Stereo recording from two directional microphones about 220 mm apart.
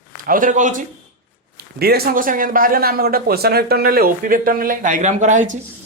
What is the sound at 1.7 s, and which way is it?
Speech, 45° right (ahead or behind).